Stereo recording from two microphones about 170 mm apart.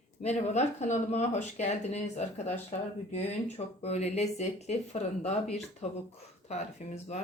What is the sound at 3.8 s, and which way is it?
Speech, 40° left (ahead or behind).